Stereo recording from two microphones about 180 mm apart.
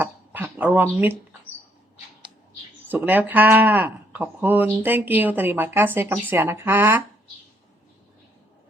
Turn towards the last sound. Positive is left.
turn(degrees=-15)  # may be behind; listen again after turning